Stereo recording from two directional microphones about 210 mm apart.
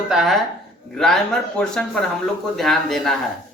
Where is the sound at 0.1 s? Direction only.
Centre (ahead or behind).